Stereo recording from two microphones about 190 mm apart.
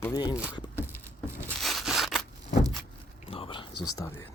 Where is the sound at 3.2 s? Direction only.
30° left (ahead or behind); by 4.3 s 15° left (ahead or behind).